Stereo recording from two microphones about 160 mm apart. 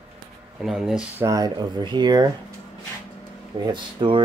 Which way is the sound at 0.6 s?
Centre (ahead or behind).